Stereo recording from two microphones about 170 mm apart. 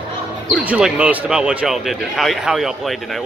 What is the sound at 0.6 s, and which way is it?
Speech, 5° right (ahead or behind).